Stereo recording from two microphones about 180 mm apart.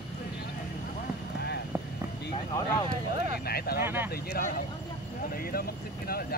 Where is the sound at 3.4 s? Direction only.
60° left (ahead or behind).